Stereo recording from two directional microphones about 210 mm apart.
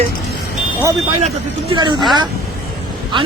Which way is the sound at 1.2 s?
25° right (ahead or behind).